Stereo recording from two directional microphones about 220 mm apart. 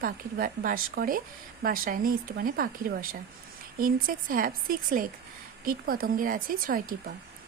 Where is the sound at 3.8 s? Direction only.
40° right (ahead or behind).